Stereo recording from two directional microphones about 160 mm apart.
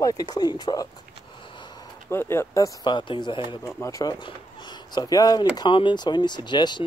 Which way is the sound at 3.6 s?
20° left (ahead or behind).